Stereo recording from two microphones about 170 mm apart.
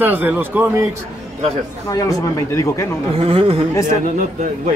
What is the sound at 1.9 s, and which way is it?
Speech, 20° left (ahead or behind).